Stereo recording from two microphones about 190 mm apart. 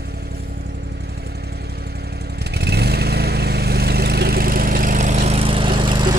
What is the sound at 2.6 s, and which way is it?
Vehicle, 60° right (ahead or behind).